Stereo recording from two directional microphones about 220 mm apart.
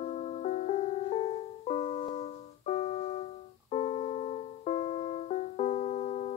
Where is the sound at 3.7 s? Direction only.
30° left (ahead or behind).